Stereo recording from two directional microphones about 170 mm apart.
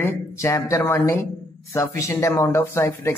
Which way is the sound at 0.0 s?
15° left (ahead or behind).